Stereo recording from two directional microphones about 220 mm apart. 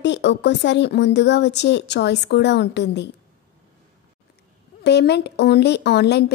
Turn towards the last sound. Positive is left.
turn(degrees=50)  # may be behind; listen again after turning